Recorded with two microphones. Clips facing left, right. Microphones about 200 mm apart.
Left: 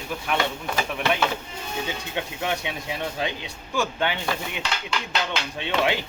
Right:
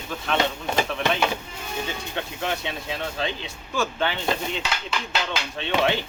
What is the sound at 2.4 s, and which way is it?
Speech, 15° left (ahead or behind).